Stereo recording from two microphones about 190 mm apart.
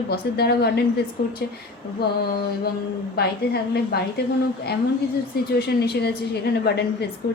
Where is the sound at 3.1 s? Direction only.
55° left (ahead or behind).